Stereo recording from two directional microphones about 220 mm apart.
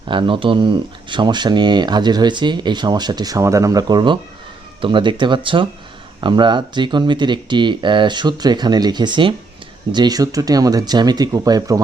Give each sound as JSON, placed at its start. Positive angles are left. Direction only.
{"t": 0.1, "sound": "speech", "side_deg": -20}